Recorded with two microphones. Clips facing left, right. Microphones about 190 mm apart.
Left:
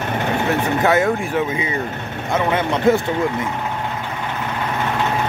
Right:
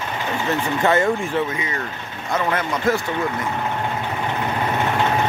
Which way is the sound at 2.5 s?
25° left (ahead or behind).